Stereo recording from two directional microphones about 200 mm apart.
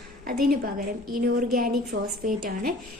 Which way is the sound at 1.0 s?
45° right (ahead or behind).